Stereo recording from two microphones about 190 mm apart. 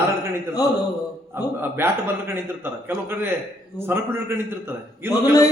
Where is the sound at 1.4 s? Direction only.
10° right (ahead or behind).